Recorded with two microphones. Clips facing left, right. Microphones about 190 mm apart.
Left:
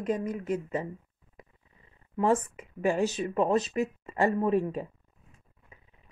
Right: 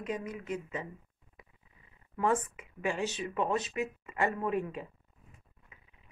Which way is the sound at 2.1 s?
30° left (ahead or behind).